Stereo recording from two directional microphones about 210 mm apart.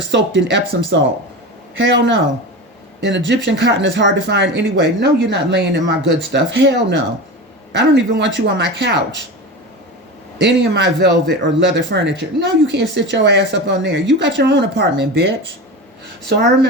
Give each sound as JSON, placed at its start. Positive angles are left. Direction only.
{"t": 0.1, "sound": "speech", "side_deg": -55}
{"t": 10.4, "sound": "speech", "side_deg": -55}
{"t": 16.2, "sound": "speech", "side_deg": -50}